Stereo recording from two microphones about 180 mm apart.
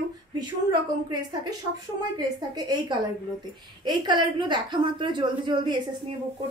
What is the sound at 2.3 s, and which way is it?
Speech, 20° right (ahead or behind).